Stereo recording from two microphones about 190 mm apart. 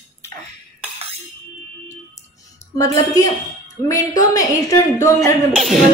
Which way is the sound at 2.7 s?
20° left (ahead or behind).